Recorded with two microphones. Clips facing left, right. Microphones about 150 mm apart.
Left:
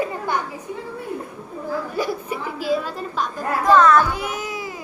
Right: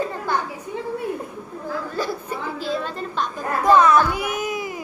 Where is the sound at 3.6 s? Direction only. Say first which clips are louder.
Even; 15° right (ahead or behind).